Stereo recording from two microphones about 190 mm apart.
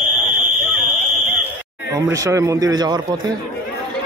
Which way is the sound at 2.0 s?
15° right (ahead or behind).